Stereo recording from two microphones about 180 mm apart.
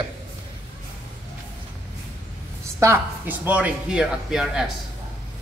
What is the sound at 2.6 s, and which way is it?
Speech, 15° right (ahead or behind).